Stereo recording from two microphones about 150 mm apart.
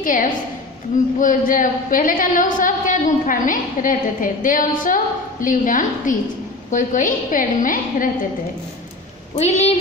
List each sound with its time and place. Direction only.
0.0 s a woman's voice: 65° left (ahead or behind)
9.4 s speech: 50° left (ahead or behind)